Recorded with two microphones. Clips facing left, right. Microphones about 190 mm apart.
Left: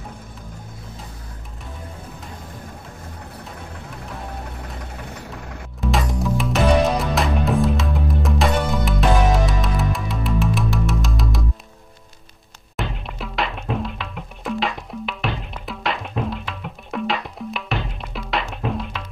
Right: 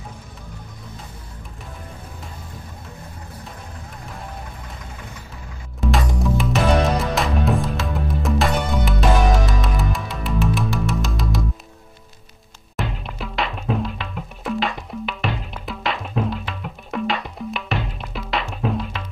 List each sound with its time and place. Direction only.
5.8 s music: centre (ahead or behind)
12.7 s music: centre (ahead or behind)